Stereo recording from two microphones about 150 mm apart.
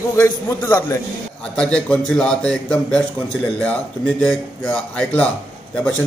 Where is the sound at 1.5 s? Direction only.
5° left (ahead or behind).